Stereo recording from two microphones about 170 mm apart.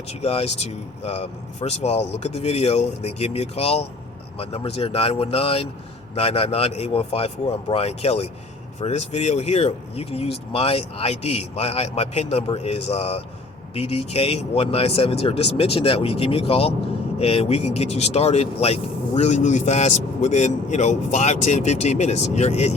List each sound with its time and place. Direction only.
0.1 s speech: 35° left (ahead or behind)